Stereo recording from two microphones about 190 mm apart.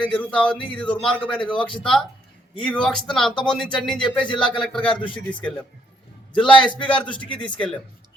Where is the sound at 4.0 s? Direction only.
25° left (ahead or behind).